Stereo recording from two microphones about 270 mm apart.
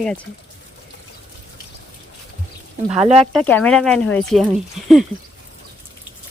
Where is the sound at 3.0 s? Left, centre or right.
Right.